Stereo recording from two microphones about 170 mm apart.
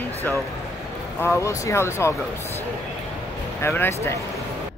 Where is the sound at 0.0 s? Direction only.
15° left (ahead or behind).